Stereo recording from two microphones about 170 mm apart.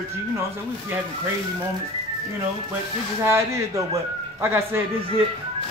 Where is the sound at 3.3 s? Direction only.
15° right (ahead or behind).